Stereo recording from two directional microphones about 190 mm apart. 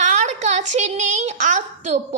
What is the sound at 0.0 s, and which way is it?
A woman's voice, 35° right (ahead or behind).